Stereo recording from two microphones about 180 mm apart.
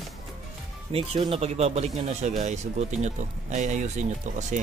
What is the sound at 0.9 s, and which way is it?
Speech, 30° right (ahead or behind).